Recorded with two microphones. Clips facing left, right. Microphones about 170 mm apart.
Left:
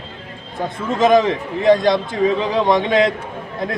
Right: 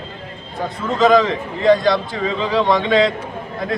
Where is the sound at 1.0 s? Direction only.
20° left (ahead or behind).